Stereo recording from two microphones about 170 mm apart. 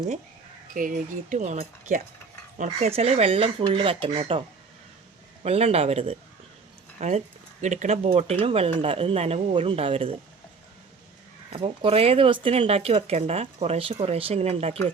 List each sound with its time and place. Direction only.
0.7 s speech: 55° right (ahead or behind); by 10.2 s 35° right (ahead or behind)
11.5 s speech: 30° right (ahead or behind)